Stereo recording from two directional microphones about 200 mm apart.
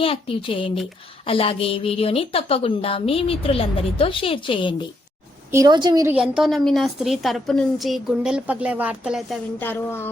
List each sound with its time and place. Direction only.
0.0 s a woman's voice: 25° left (ahead or behind)
5.5 s a woman's voice: 15° right (ahead or behind)
6.1 s a woman's voice: 5° right (ahead or behind)
9.6 s speech: 10° left (ahead or behind)